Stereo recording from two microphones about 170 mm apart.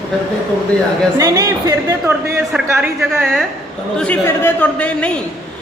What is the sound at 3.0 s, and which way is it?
Speech, centre (ahead or behind).